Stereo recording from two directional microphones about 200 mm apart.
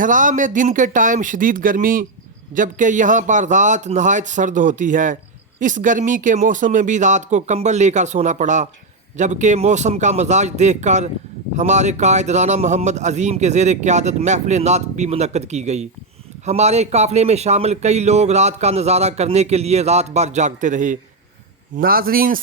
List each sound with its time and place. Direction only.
0.0 s a man's voice: 40° right (ahead or behind)